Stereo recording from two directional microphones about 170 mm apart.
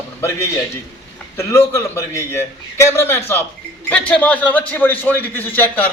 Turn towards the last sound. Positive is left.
turn(degrees=10)  # may be behind; listen again after turning